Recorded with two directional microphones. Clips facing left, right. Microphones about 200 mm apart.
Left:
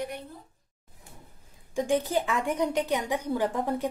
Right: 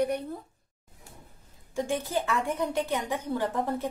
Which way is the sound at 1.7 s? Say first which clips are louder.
Left 3 dB; 15° left (ahead or behind).